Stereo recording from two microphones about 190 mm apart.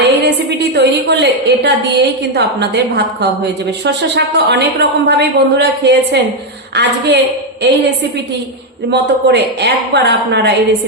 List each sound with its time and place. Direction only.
0.0 s a woman's voice: 65° right (ahead or behind)
8.9 s a woman's voice: 65° right (ahead or behind)